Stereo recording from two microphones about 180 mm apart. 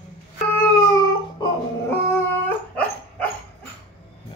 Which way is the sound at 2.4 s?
10° left (ahead or behind).